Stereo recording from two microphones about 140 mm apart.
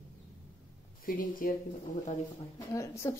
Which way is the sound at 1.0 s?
80° left.